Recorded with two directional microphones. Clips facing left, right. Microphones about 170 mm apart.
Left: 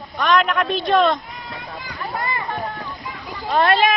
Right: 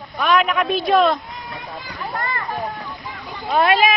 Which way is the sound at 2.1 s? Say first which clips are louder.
Left 1 dB; 10° left (ahead or behind).